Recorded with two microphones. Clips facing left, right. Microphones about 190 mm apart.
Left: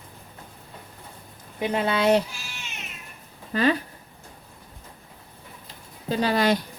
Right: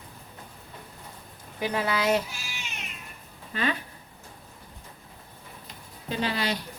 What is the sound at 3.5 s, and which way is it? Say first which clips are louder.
Speech: left 7 dB; 40° left (ahead or behind).